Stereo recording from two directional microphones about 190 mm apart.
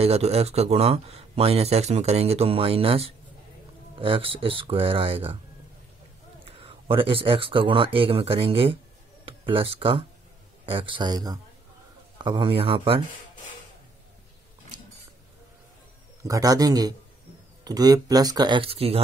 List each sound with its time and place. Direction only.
0.0 s speech: 35° right (ahead or behind)
6.6 s speech: 30° right (ahead or behind)
16.3 s speech: 20° right (ahead or behind)